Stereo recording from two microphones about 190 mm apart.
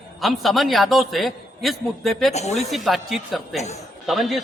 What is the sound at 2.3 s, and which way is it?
Speech, 35° left (ahead or behind).